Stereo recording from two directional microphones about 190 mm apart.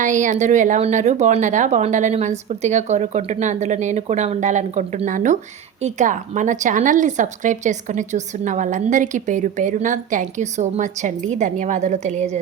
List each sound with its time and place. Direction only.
0.0 s speech: 40° right (ahead or behind)